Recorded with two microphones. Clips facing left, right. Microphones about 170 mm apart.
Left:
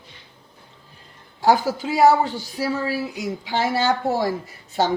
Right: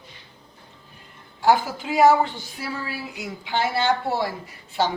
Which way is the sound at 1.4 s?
40° left (ahead or behind).